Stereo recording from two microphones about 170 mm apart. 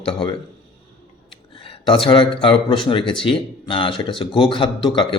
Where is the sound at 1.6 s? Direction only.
30° left (ahead or behind).